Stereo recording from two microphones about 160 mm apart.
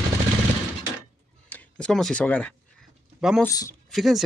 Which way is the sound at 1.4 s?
10° left (ahead or behind).